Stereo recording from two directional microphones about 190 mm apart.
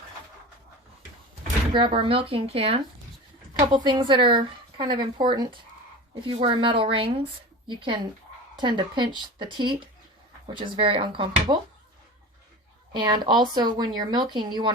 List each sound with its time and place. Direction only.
1.7 s speech: 25° right (ahead or behind)
12.9 s speech: 25° right (ahead or behind)